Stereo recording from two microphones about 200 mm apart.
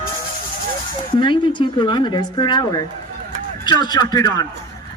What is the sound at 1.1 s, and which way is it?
A man's voice, 25° left (ahead or behind).